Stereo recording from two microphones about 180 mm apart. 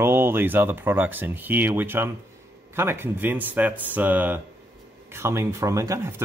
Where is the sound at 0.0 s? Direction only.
15° right (ahead or behind).